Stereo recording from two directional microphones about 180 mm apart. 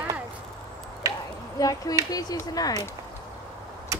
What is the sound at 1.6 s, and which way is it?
Speech, 20° left (ahead or behind).